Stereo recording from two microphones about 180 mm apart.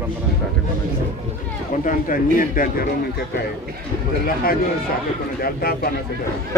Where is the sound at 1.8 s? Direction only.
50° left (ahead or behind).